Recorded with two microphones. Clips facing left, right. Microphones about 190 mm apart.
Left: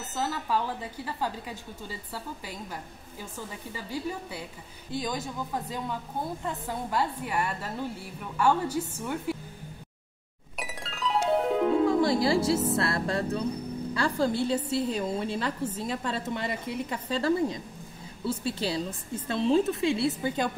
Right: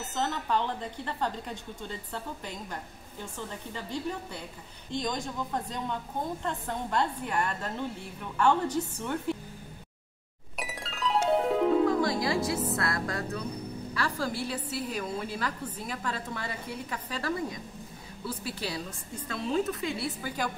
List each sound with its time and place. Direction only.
0.1 s a woman's voice: 5° left (ahead or behind)
10.6 s music: centre (ahead or behind)
12.0 s music: 30° left (ahead or behind)
13.9 s a woman's voice: 25° left (ahead or behind)